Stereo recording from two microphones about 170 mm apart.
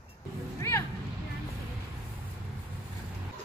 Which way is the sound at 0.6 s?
15° left (ahead or behind).